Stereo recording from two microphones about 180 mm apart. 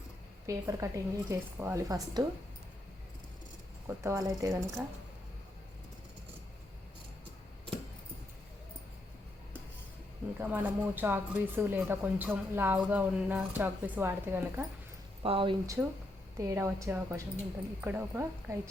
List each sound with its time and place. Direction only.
0.4 s speech: 15° right (ahead or behind)
3.8 s speech: 15° right (ahead or behind)
10.3 s speech: 10° right (ahead or behind)
15.2 s speech: 30° right (ahead or behind); by 18.7 s 15° right (ahead or behind)